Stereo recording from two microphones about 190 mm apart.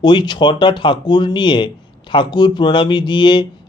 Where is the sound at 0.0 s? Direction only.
25° left (ahead or behind).